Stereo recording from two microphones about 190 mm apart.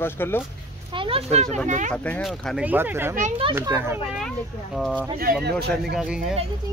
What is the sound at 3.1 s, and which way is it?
Speech, 35° right (ahead or behind).